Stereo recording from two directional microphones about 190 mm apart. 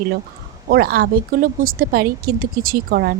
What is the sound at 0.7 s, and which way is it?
Speech, 50° right (ahead or behind).